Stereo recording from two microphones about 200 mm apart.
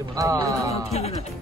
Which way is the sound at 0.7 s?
30° left (ahead or behind).